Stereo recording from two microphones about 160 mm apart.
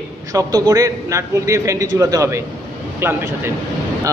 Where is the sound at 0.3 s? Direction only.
20° right (ahead or behind).